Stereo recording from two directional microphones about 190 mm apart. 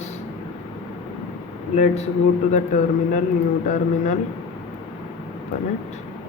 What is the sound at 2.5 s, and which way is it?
Speech, 40° left (ahead or behind).